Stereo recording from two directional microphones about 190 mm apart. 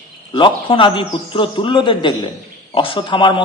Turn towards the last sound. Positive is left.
turn(degrees=25)  # may be behind; listen again after turning